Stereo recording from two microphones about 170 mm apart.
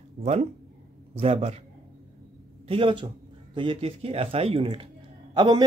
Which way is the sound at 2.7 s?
30° right (ahead or behind).